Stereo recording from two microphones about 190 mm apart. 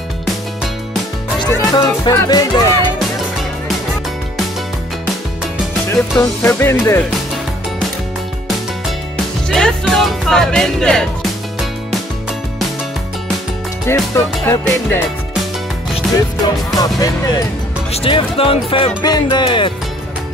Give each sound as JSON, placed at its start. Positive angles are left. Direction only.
{"t": 1.4, "sound": "speech", "side_deg": 20}
{"t": 5.9, "sound": "speech", "side_deg": 10}
{"t": 9.5, "sound": "speech", "side_deg": 0}
{"t": 13.8, "sound": "speech", "side_deg": 15}
{"t": 16.4, "sound": "speech", "side_deg": 20}